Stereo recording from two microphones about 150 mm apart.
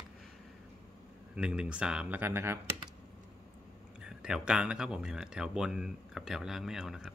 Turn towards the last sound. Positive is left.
turn(degrees=0)  # may be behind; listen again after turning